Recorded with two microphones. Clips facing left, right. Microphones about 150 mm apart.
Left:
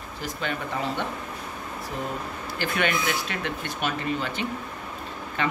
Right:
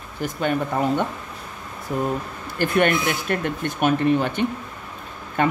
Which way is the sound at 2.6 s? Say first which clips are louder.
Right 7 dB; 50° right (ahead or behind).